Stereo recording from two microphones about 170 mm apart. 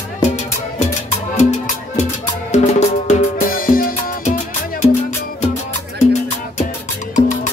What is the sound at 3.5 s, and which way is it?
Music, 55° left (ahead or behind).